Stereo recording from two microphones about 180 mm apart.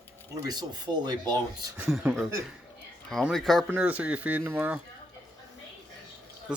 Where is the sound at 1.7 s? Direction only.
5° right (ahead or behind).